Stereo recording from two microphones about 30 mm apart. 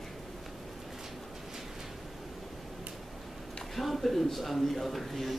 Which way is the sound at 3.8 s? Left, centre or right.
Centre.